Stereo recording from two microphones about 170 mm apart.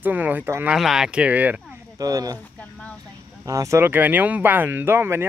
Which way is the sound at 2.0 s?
20° right (ahead or behind).